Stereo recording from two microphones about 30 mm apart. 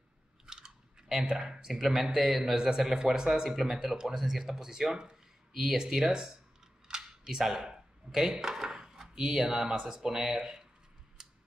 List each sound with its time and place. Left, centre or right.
0.5 s chewing: right
1.3 s speech: right
1.7 s speech: centre
6.9 s camera: centre
7.6 s a sound: right
9.4 s speech: right
11.2 s a sound: right